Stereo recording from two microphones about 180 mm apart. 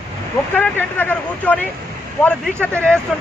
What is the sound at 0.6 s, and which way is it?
Speech, 10° left (ahead or behind).